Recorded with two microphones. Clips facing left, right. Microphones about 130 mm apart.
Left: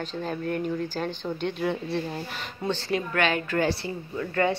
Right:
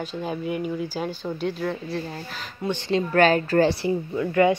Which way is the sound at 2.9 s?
35° right (ahead or behind).